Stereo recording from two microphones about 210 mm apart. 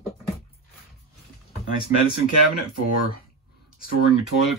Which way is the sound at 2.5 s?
45° left (ahead or behind).